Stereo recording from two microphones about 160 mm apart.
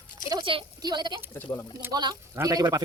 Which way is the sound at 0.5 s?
25° right (ahead or behind).